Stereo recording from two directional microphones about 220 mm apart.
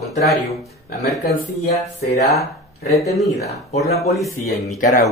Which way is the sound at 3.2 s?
30° left (ahead or behind).